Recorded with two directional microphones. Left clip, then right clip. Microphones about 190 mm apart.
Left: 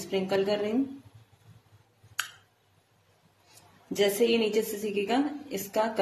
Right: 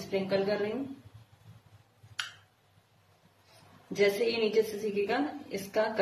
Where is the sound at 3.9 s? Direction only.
45° left (ahead or behind).